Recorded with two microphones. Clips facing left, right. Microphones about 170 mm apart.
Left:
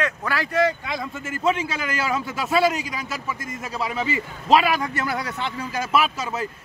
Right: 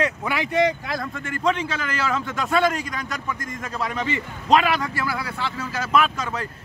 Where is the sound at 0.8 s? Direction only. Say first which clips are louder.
Right 1 dB; 5° left (ahead or behind).